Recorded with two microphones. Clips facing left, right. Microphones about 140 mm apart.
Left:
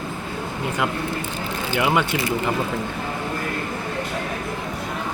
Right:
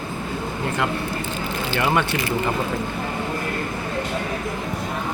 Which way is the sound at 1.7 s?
10° left (ahead or behind).